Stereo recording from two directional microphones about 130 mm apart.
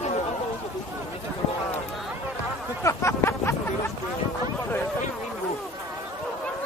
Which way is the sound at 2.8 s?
20° left (ahead or behind).